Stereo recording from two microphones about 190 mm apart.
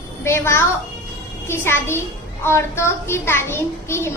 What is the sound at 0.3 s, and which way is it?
A child's voice, 15° left (ahead or behind).